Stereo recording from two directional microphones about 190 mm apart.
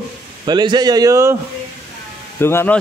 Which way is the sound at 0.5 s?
20° right (ahead or behind).